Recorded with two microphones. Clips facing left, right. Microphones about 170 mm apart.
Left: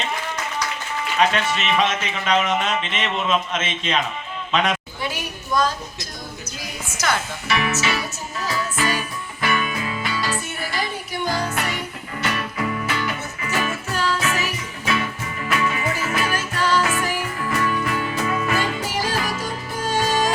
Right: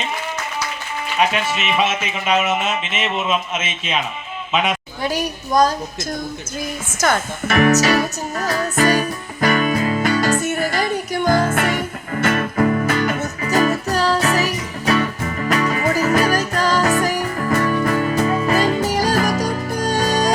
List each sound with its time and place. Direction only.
1.2 s a woman's voice: 10° right (ahead or behind)
5.0 s a woman's voice: 40° right (ahead or behind)
6.6 s music: 45° right (ahead or behind)